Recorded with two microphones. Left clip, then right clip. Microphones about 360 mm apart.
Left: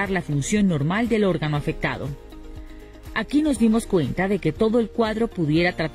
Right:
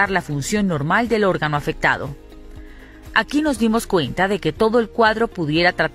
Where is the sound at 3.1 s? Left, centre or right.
Right.